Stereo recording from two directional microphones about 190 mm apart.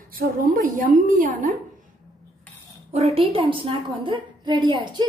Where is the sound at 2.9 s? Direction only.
35° right (ahead or behind).